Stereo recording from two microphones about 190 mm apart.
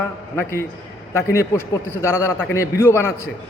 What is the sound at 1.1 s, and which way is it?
A man's voice, 15° left (ahead or behind).